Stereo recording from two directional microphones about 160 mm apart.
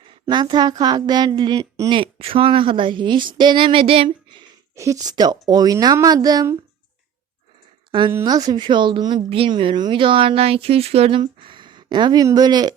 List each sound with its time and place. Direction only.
0.1 s speech: 25° right (ahead or behind)
2.0 s a woman's voice: 35° right (ahead or behind)
4.7 s speech: 20° right (ahead or behind)
7.9 s a woman's voice: 30° right (ahead or behind)